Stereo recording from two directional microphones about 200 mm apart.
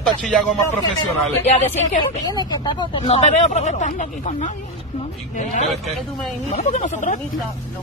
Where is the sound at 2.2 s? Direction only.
20° left (ahead or behind).